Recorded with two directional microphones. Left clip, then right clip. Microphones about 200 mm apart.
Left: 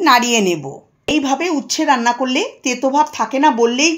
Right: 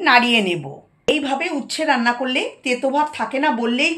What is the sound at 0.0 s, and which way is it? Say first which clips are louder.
Speech: left 2 dB; 45° left (ahead or behind).